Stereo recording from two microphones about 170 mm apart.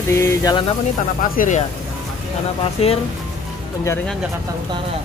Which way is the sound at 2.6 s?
35° left (ahead or behind).